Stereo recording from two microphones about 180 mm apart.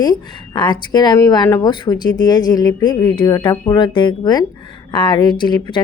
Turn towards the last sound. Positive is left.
turn(degrees=25)  # may be behind; listen again after turning